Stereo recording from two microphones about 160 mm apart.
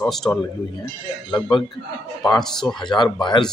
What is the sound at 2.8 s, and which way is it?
Speech, 30° left (ahead or behind).